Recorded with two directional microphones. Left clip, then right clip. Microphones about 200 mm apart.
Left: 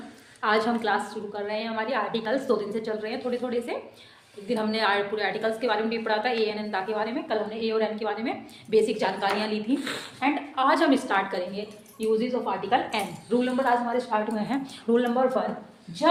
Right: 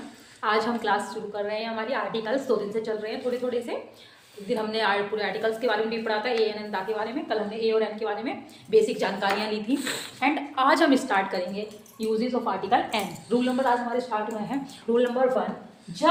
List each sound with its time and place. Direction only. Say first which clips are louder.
0.4 s a woman's voice: left 1 dB; 30° left (ahead or behind); by 9.7 s 15° left (ahead or behind)
9.7 s a woman's voice: right 1 dB; 5° right (ahead or behind)
13.3 s a woman's voice: even; centre (ahead or behind)
14.3 s a woman's voice: left 2 dB; 30° left (ahead or behind)